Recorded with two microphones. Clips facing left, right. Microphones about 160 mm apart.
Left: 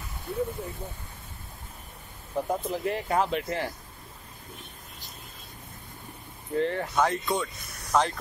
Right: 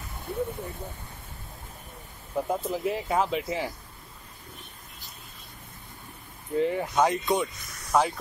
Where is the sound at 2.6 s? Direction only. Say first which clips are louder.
Right 1 dB; 5° right (ahead or behind).